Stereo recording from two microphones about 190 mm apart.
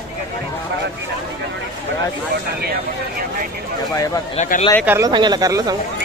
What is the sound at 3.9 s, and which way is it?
Speech, 20° left (ahead or behind).